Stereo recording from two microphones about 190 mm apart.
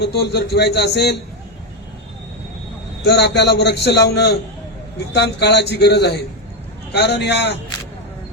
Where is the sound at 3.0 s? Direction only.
60° left (ahead or behind).